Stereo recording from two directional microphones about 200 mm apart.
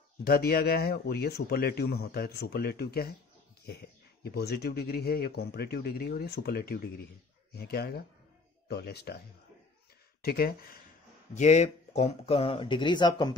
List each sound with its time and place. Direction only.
0.2 s speech: 50° left (ahead or behind)
10.2 s speech: 50° left (ahead or behind)
11.3 s speech: 35° left (ahead or behind)